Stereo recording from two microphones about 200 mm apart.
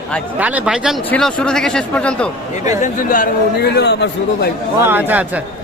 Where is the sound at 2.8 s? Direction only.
45° left (ahead or behind); by 4.5 s 60° left (ahead or behind).